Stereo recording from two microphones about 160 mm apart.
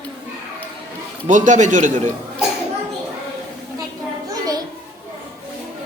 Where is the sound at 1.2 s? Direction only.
50° right (ahead or behind).